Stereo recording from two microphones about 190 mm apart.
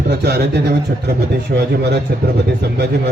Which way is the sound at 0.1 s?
60° right (ahead or behind).